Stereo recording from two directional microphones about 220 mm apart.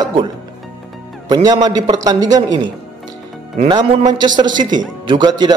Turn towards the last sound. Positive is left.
turn(degrees=-20)  # may be behind; listen again after turning